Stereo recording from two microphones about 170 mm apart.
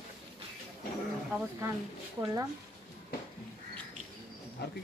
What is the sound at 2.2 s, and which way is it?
Speech, 15° right (ahead or behind).